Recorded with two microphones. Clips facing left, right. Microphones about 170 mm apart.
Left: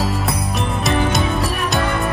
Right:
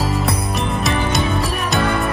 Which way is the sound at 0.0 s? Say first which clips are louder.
Right 1 dB; centre (ahead or behind).